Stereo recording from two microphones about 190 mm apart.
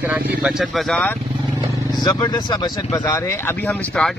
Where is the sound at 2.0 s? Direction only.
20° left (ahead or behind).